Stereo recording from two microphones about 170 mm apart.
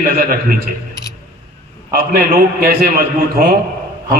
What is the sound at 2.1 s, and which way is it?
A man's voice, 60° right (ahead or behind).